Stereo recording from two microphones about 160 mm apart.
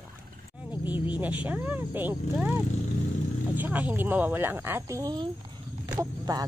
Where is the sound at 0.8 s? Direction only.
30° left (ahead or behind).